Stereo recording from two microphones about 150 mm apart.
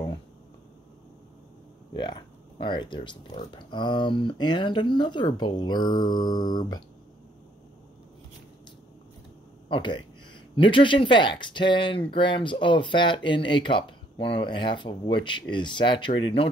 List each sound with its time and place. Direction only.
2.6 s speech: 30° left (ahead or behind)
5.9 s mantra: 30° left (ahead or behind)
9.7 s speech: 35° left (ahead or behind)